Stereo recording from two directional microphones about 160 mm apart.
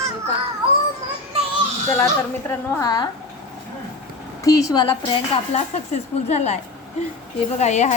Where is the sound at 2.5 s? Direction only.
20° left (ahead or behind).